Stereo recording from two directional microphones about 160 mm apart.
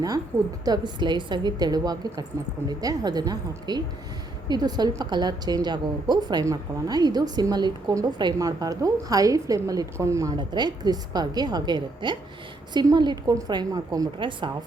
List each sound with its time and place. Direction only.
0.6 s a woman's voice: 25° right (ahead or behind)